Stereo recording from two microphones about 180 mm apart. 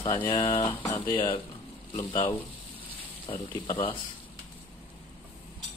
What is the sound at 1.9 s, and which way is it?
Speech, 15° left (ahead or behind).